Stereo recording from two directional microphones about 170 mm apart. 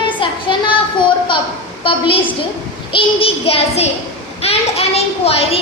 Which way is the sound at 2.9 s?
35° left (ahead or behind).